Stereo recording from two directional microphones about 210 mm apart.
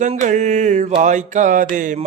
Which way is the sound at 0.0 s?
35° right (ahead or behind).